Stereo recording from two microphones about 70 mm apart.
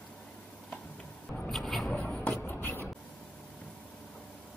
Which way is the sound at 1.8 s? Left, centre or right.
Centre.